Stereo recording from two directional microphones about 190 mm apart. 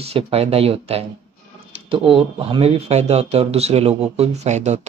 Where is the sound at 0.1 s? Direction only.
30° right (ahead or behind).